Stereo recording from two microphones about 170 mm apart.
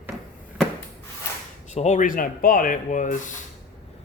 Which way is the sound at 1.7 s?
45° left (ahead or behind).